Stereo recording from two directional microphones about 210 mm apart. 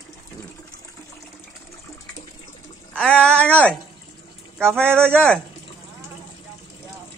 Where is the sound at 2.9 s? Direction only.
5° left (ahead or behind).